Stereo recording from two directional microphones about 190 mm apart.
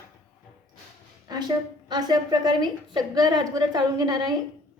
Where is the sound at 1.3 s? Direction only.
20° right (ahead or behind).